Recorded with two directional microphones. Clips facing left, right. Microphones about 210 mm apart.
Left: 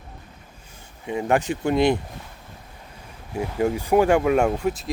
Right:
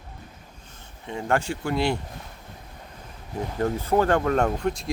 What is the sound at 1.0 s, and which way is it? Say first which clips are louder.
Speech: left 4 dB; 15° left (ahead or behind).